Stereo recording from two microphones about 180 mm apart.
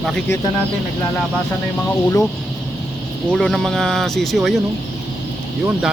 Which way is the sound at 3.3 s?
5° left (ahead or behind).